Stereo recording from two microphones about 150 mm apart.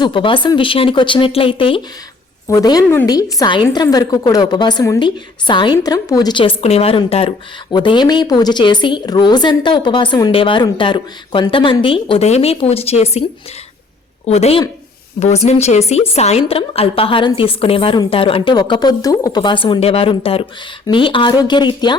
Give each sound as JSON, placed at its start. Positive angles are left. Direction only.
{"t": 0.0, "sound": "speech", "side_deg": 35}
{"t": 2.5, "sound": "a woman's voice", "side_deg": 25}
{"t": 14.3, "sound": "speech", "side_deg": 45}